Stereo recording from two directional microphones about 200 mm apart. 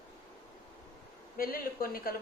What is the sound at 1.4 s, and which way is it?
Speech, 45° left (ahead or behind).